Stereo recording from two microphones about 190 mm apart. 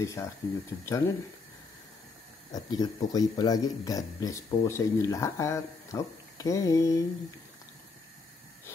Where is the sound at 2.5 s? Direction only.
20° left (ahead or behind).